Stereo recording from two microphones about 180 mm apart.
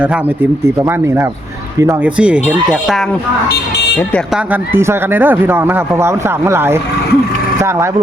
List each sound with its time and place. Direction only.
0.8 s speech: 15° right (ahead or behind)
4.7 s speech: 15° right (ahead or behind)